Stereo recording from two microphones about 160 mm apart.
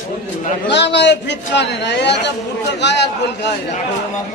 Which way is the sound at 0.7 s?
90° left.